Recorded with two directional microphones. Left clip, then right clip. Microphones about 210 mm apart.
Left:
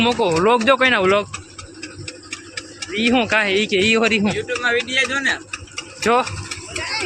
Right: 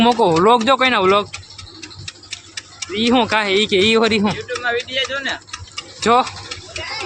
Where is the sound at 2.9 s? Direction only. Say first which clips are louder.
Right 1 dB; 15° right (ahead or behind).